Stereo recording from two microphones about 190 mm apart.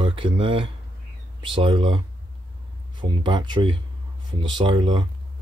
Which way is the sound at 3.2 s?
25° right (ahead or behind).